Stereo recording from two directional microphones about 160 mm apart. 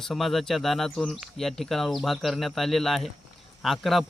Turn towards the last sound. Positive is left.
turn(degrees=0)  # may be behind; listen again after turning